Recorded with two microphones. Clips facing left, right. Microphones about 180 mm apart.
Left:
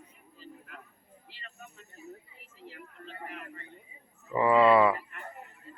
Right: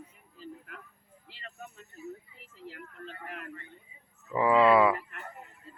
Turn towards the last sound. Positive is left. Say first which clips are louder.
# even
turn(degrees=-5)  # may be behind; listen again after turning